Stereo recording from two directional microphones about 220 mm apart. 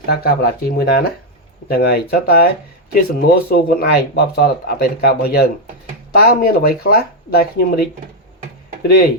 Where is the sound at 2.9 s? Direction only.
45° left (ahead or behind).